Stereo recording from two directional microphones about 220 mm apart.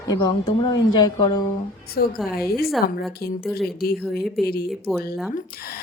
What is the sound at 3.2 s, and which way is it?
Speech, 45° left (ahead or behind).